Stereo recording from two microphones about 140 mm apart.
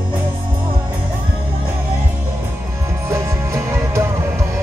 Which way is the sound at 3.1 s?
20° right (ahead or behind).